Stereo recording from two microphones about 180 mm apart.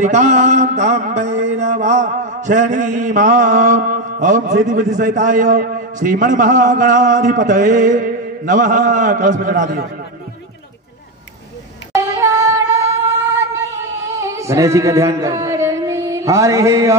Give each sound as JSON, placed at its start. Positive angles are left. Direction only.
{"t": 0.0, "sound": "mantra", "side_deg": -40}
{"t": 1.2, "sound": "music", "side_deg": -80}
{"t": 1.5, "sound": "a man's voice", "side_deg": -40}
{"t": 11.9, "sound": "music", "side_deg": -20}
{"t": 14.2, "sound": "a sound", "side_deg": -15}